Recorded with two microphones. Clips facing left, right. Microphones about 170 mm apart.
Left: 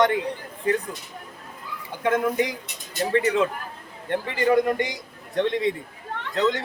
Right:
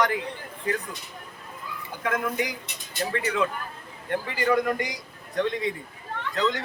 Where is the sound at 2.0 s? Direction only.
30° left (ahead or behind).